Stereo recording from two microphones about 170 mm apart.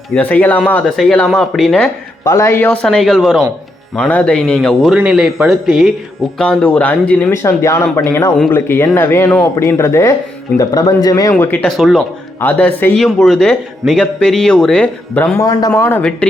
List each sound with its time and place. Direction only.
0.1 s speech: 10° left (ahead or behind)
2.2 s speech: 15° left (ahead or behind)
11.8 s speech: centre (ahead or behind)
12.4 s speech: 10° left (ahead or behind)
15.4 s speech: 20° left (ahead or behind)
15.8 s speech: 10° left (ahead or behind)